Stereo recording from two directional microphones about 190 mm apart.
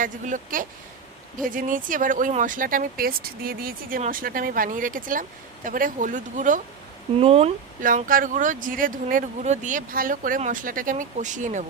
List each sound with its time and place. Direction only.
0.0 s speech: 45° right (ahead or behind)
7.2 s speech: 30° right (ahead or behind)
7.8 s speech: 45° right (ahead or behind)